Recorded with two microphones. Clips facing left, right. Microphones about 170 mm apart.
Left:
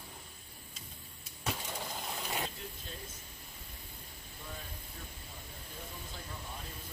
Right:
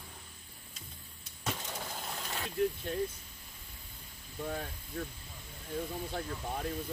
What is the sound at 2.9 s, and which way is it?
Speech, 65° right (ahead or behind).